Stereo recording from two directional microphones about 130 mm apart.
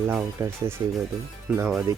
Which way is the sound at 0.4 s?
20° right (ahead or behind).